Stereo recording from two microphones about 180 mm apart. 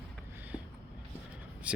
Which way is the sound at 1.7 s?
5° right (ahead or behind).